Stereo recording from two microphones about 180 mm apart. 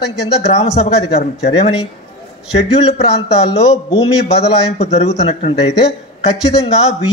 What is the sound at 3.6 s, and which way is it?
A man's voice, 35° left (ahead or behind).